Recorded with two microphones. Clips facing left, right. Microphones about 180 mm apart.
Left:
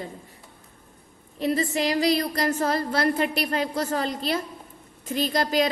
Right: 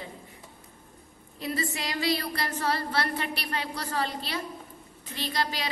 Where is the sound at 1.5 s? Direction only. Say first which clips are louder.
Left 7 dB; 40° left (ahead or behind).